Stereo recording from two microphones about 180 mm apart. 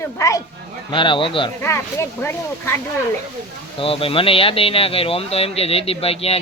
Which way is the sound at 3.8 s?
30° left (ahead or behind).